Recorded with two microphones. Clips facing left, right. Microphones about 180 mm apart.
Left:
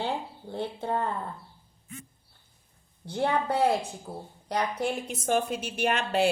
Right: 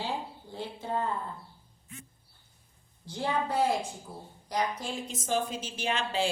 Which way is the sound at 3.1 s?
60° left (ahead or behind).